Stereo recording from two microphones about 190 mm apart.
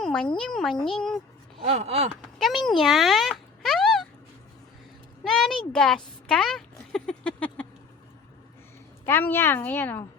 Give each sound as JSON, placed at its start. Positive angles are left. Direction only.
{"t": 0.0, "sound": "music", "side_deg": 5}
{"t": 0.3, "sound": "a child's voice", "side_deg": 5}
{"t": 1.6, "sound": "speech", "side_deg": -35}
{"t": 2.4, "sound": "a sound", "side_deg": 0}
{"t": 5.2, "sound": "a child's voice", "side_deg": 5}
{"t": 9.0, "sound": "a woman's voice", "side_deg": 10}